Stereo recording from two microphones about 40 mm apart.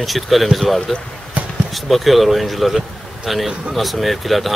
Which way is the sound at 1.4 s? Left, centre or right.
Right.